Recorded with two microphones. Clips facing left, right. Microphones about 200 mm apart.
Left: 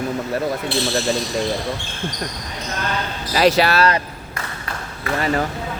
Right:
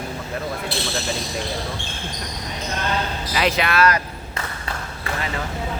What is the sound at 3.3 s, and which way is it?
Speech, 40° left (ahead or behind).